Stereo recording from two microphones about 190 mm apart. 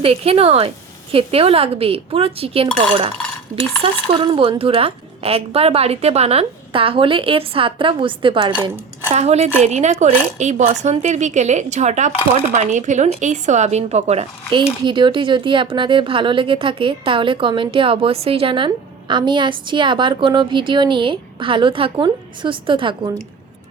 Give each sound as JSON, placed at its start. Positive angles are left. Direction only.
{"t": 0.0, "sound": "speech", "side_deg": -30}
{"t": 4.1, "sound": "speech", "side_deg": -25}